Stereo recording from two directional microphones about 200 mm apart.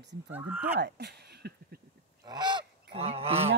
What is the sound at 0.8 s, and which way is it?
Speech, 55° right (ahead or behind).